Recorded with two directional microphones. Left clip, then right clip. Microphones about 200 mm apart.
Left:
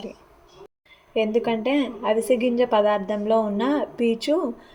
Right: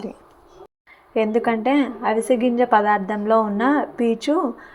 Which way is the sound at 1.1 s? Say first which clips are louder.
Right 2 dB; 10° right (ahead or behind).